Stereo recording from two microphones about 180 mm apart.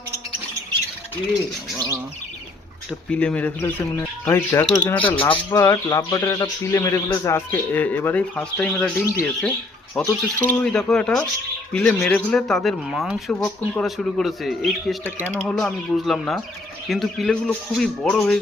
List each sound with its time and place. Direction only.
1.7 s bird: 15° right (ahead or behind)
3.1 s speech: 5° left (ahead or behind)
5.0 s speech: 30° left (ahead or behind)
5.5 s speech: 15° left (ahead or behind)